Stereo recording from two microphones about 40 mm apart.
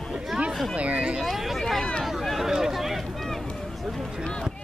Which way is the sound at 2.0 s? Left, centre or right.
Centre.